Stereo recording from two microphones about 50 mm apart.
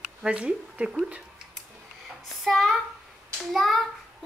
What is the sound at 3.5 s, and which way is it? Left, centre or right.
Speech, centre.